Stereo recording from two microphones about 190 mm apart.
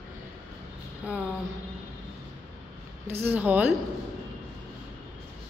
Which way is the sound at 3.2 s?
10° right (ahead or behind).